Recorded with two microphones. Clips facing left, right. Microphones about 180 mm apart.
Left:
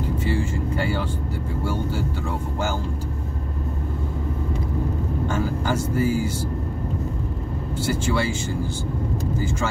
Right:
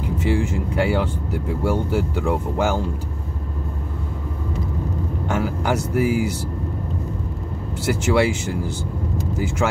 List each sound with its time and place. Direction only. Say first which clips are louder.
0.2 s speech: right 3 dB; 80° right
2.2 s speech: right 6 dB; 70° right (ahead or behind)
5.3 s speech: right 4 dB; 75° right (ahead or behind)
7.8 s speech: right 5 dB; 80° right